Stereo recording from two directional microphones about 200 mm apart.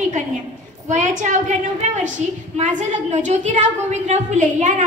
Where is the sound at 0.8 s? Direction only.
35° right (ahead or behind).